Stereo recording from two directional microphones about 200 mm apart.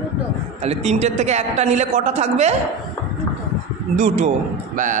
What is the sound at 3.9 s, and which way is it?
Speech, 40° right (ahead or behind).